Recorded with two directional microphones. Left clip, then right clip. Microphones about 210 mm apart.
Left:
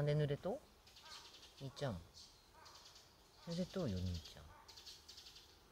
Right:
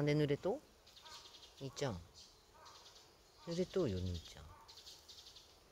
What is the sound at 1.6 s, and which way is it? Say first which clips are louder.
Speech: right 3 dB; 35° right (ahead or behind).